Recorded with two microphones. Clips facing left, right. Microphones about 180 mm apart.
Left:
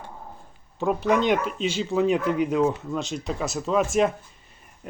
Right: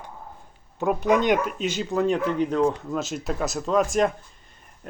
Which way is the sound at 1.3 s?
Centre (ahead or behind).